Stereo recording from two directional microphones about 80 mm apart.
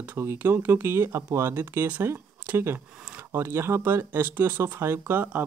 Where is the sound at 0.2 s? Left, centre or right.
Right.